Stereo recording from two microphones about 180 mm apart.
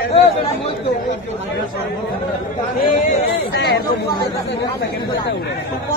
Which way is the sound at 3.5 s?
70° left (ahead or behind).